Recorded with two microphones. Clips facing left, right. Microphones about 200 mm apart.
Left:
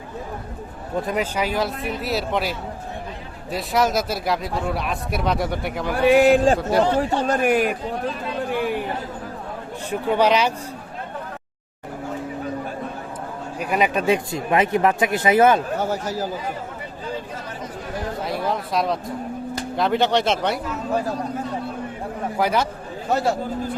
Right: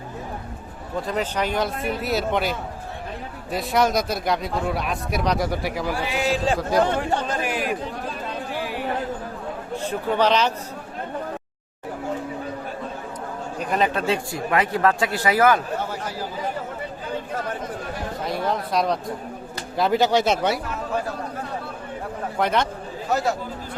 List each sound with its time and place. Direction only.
1.0 s speech: 10° left (ahead or behind)
5.9 s speech: 55° left (ahead or behind)
6.6 s speech: centre (ahead or behind)
7.0 s a man's voice: 50° left (ahead or behind)
8.5 s chatter: 55° left (ahead or behind)
9.9 s speech: 10° left (ahead or behind)
13.6 s speech: 10° left (ahead or behind)
15.8 s a man's voice: 45° left (ahead or behind)
18.3 s a sound: centre (ahead or behind)
19.7 s speech: 5° right (ahead or behind)
22.4 s speech: 5° left (ahead or behind)
23.1 s speech: 30° left (ahead or behind)